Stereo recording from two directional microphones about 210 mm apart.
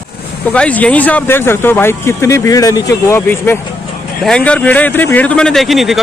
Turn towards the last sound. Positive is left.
turn(degrees=0)  # may be behind; listen again after turning